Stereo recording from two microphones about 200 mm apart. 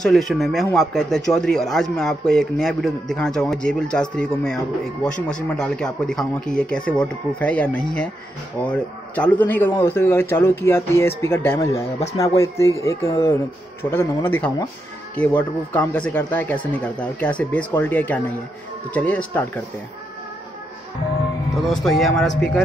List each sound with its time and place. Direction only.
0.0 s a man's voice: centre (ahead or behind)
11.8 s speech: 35° left (ahead or behind)
12.4 s speech: 15° left (ahead or behind)
21.8 s a man's voice: centre (ahead or behind)